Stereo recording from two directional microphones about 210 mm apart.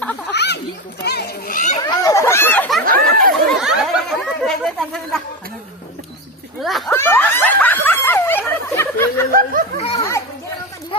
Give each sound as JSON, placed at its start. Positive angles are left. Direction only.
{"t": 0.3, "sound": "a sound", "side_deg": 55}
{"t": 1.8, "sound": "chatter", "side_deg": 20}
{"t": 2.8, "sound": "chatter", "side_deg": -40}
{"t": 3.4, "sound": "a sound", "side_deg": 0}
{"t": 6.9, "sound": "snicker", "side_deg": 10}
{"t": 9.3, "sound": "snicker", "side_deg": -40}
{"t": 9.9, "sound": "children playing", "side_deg": 15}